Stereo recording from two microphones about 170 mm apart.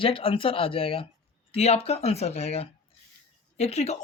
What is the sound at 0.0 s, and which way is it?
A woman's voice, 30° left (ahead or behind).